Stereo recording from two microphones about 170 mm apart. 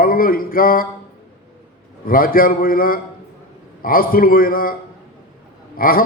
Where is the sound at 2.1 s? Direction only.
55° left (ahead or behind).